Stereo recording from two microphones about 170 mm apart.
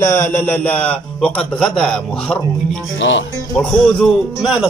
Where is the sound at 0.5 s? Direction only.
10° left (ahead or behind).